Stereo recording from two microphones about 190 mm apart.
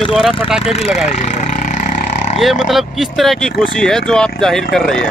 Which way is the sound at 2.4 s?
Centre (ahead or behind).